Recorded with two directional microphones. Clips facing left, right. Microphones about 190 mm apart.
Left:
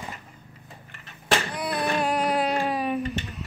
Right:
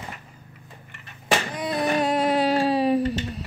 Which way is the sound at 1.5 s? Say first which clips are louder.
Right 3 dB; 20° right (ahead or behind).